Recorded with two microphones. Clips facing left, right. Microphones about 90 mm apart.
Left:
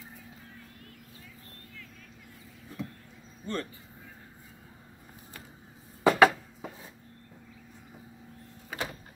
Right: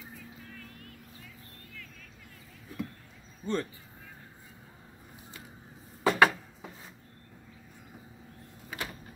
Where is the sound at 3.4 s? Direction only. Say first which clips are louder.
Right 3 dB; 20° right (ahead or behind).